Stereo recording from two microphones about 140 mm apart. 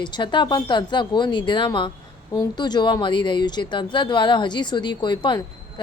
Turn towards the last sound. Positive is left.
turn(degrees=35)  # may be behind; listen again after turning